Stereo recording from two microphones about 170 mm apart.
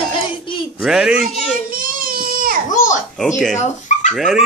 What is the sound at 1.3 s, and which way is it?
Speech, 40° left (ahead or behind).